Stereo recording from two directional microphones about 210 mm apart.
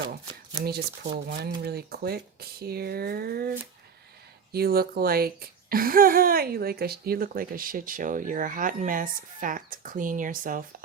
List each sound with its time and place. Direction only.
1.3 s speech: 50° right (ahead or behind)
4.5 s speech: 45° right (ahead or behind)